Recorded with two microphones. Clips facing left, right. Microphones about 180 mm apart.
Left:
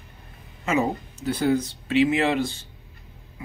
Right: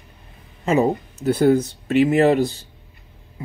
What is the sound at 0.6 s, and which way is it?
Speech, 40° right (ahead or behind).